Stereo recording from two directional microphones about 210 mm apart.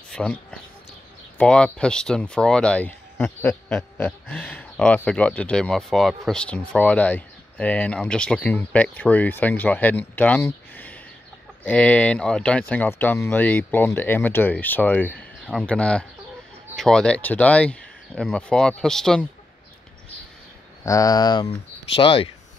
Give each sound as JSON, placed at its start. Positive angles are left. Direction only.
{"t": 0.1, "sound": "speech", "side_deg": 5}
{"t": 20.8, "sound": "speech", "side_deg": 15}